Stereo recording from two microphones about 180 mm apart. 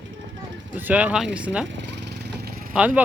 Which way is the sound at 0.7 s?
10° right (ahead or behind).